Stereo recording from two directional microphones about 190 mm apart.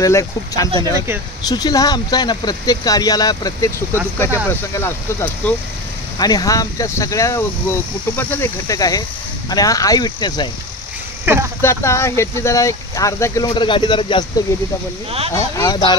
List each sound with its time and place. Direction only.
0.0 s speech: 15° left (ahead or behind)
11.2 s a sound: 15° right (ahead or behind)
11.6 s speech: 15° left (ahead or behind)
15.3 s speech: 20° left (ahead or behind)